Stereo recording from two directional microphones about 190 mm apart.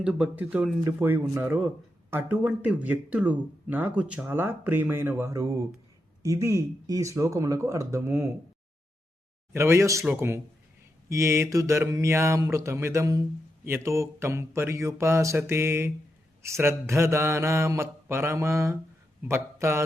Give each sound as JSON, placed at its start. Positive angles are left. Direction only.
{"t": 0.0, "sound": "speech", "side_deg": -5}
{"t": 9.5, "sound": "speech", "side_deg": -15}